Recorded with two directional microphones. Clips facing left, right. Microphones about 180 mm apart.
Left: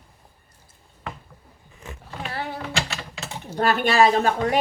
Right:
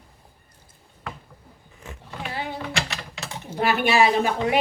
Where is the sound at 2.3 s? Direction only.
15° right (ahead or behind).